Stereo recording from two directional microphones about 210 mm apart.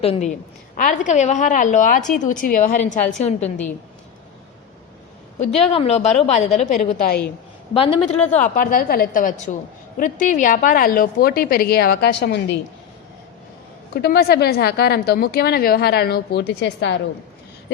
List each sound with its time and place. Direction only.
0.0 s a woman's voice: 30° left (ahead or behind)
5.5 s a woman's voice: 30° left (ahead or behind)
8.1 s speech: 5° left (ahead or behind)
8.4 s a woman's voice: 40° left (ahead or behind); by 12.5 s 55° left (ahead or behind)
13.9 s a woman's voice: 50° left (ahead or behind)